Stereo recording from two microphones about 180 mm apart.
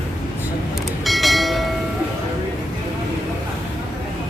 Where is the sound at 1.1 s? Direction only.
Centre (ahead or behind).